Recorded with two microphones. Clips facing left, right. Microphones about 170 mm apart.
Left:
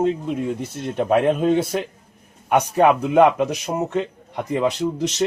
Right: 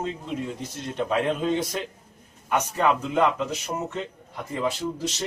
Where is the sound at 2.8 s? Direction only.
65° left (ahead or behind).